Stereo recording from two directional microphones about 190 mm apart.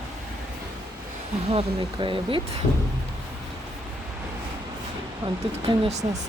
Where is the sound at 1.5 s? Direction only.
30° right (ahead or behind).